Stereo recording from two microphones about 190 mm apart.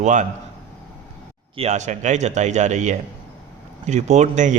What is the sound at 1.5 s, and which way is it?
A man's voice, 35° right (ahead or behind).